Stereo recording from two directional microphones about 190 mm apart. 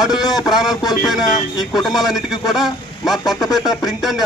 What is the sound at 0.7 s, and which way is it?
Speech, 20° left (ahead or behind).